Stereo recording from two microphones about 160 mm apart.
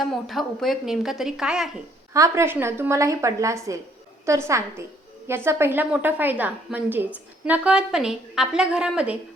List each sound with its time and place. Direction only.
0.0 s a woman's voice: centre (ahead or behind)
2.1 s a woman's voice: 20° right (ahead or behind)